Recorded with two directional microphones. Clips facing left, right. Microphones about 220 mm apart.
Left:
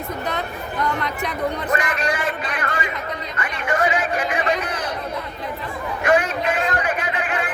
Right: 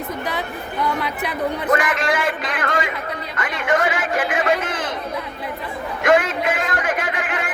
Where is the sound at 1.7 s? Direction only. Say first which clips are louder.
Right 3 dB; 90° right.